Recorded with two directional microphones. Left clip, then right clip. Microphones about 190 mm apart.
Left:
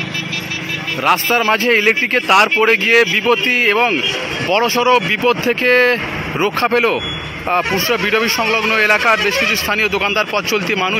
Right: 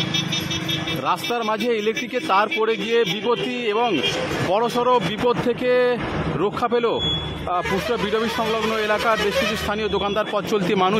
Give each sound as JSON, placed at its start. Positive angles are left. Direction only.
{"t": 1.0, "sound": "speech", "side_deg": 10}